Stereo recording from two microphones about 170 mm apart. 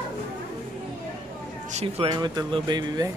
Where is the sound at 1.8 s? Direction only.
30° right (ahead or behind).